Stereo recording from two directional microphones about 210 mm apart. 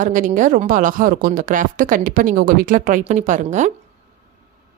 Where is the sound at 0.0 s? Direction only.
40° right (ahead or behind).